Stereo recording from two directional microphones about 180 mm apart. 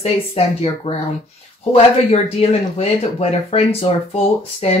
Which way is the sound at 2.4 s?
35° left (ahead or behind).